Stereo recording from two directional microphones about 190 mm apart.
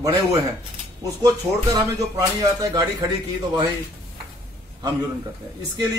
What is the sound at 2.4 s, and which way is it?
Speech, 20° right (ahead or behind).